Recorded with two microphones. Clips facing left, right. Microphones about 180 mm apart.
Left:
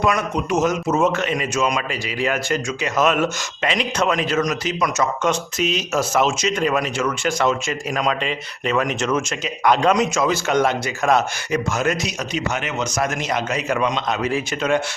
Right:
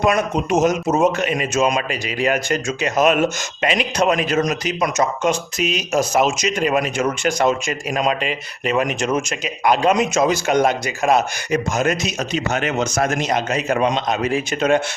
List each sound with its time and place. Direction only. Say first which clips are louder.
0.0 s a man's voice: right 2 dB; 20° right (ahead or behind)
13.7 s a man's voice: right 3 dB; 35° right (ahead or behind)
14.3 s a man's voice: right 4 dB; 20° right (ahead or behind)